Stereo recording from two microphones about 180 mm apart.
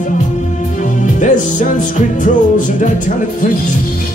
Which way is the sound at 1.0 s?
45° left (ahead or behind).